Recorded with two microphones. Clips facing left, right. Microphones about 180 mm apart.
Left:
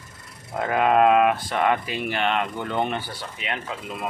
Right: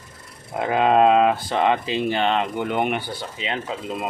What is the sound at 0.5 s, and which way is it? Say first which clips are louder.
Speech: right 2 dB; 20° right (ahead or behind).